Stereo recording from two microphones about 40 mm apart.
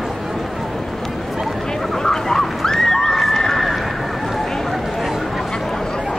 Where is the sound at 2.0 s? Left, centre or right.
Centre.